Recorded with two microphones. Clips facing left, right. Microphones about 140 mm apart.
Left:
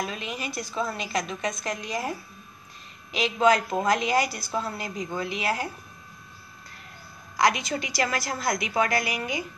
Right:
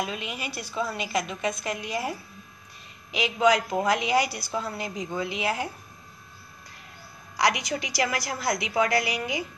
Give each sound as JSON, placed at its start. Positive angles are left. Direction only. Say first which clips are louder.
{"t": 0.0, "sound": "a woman's voice", "louder": "even", "side_deg": -15}
{"t": 7.3, "sound": "a woman's voice", "louder": "left 1 dB", "side_deg": -15}